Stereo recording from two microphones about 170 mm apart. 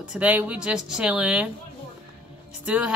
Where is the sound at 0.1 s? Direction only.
10° right (ahead or behind).